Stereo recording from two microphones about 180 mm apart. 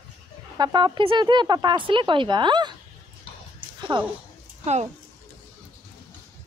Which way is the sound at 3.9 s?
25° right (ahead or behind).